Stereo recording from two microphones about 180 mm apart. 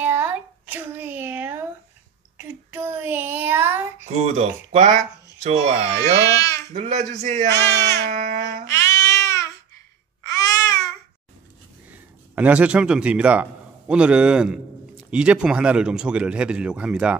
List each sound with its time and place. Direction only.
0.0 s a sound: 10° right (ahead or behind)
4.1 s speech: 35° right (ahead or behind)
5.9 s speech: 20° left (ahead or behind)
6.7 s speech: 40° right (ahead or behind)
8.1 s a sound: 45° right (ahead or behind)
8.6 s babbling: 15° left (ahead or behind)
11.9 s a man's voice: 10° right (ahead or behind)